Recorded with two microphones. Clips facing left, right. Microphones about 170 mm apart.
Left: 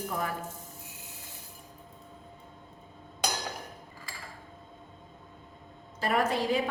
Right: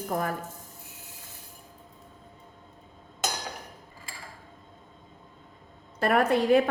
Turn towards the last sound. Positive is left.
turn(degrees=-60)  # may be behind; listen again after turning